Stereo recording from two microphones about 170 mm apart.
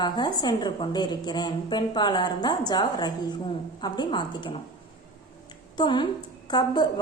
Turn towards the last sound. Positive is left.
turn(degrees=25)  # may be behind; listen again after turning